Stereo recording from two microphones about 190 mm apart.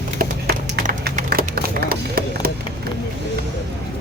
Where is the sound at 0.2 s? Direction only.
50° right (ahead or behind).